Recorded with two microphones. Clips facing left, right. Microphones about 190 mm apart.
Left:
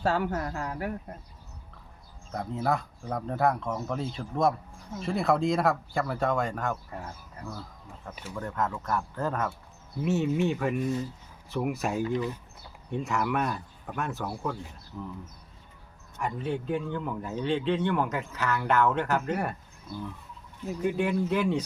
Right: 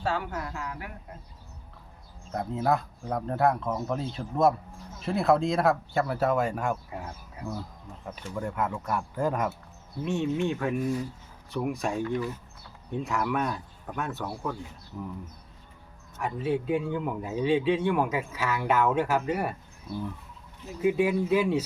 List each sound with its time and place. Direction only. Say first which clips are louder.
0.0 s speech: left 3 dB; 40° left (ahead or behind)
2.3 s speech: right 2 dB; centre (ahead or behind)
10.0 s speech: left 1 dB; 5° left (ahead or behind)
16.1 s speech: right 3 dB; 5° right (ahead or behind)
20.8 s speech: right 3 dB; 5° right (ahead or behind)